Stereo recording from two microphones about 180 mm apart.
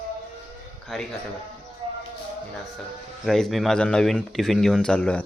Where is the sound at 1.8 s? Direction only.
30° right (ahead or behind).